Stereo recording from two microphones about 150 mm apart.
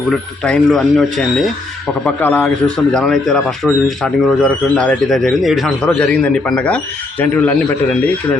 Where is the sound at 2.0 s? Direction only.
10° left (ahead or behind).